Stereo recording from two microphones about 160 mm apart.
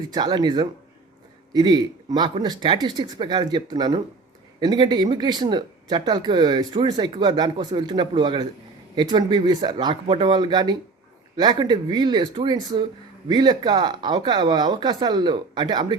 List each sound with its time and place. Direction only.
0.1 s speech: 25° right (ahead or behind)